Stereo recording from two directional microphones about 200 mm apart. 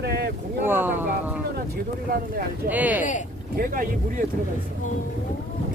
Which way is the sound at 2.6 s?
10° right (ahead or behind).